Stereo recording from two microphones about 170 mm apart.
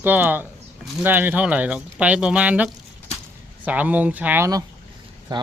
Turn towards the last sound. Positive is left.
turn(degrees=-25)  # may be behind; listen again after turning